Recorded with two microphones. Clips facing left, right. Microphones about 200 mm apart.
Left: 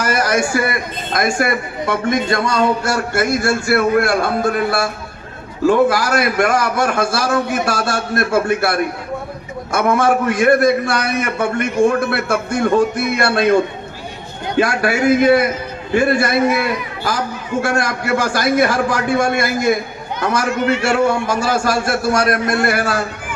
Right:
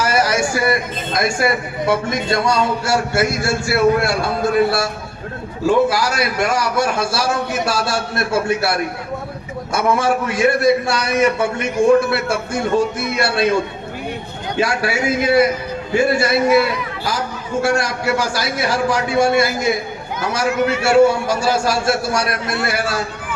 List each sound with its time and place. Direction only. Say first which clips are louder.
0.0 s a man's voice: even; 55° left (ahead or behind)
14.6 s a man's voice: left 3 dB; 55° left (ahead or behind)